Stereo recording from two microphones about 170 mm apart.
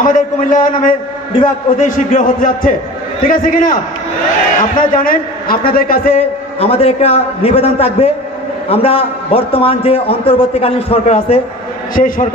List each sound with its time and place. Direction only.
0.0 s a man's voice: 50° left (ahead or behind)
6.1 s a man's voice: 35° left (ahead or behind)
11.9 s a man's voice: 55° left (ahead or behind)